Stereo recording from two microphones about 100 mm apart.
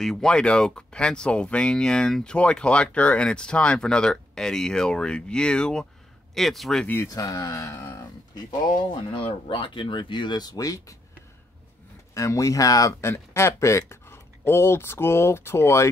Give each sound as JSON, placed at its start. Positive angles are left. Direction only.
{"t": 0.0, "sound": "speech", "side_deg": 5}
{"t": 7.1, "sound": "speech", "side_deg": 40}
{"t": 8.5, "sound": "speech", "side_deg": 50}
{"t": 9.2, "sound": "speech", "side_deg": 60}
{"t": 12.1, "sound": "speech", "side_deg": 30}
{"t": 13.1, "sound": "speech", "side_deg": 25}